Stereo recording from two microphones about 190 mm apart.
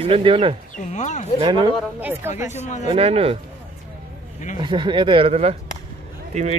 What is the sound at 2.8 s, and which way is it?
Speech, 30° right (ahead or behind).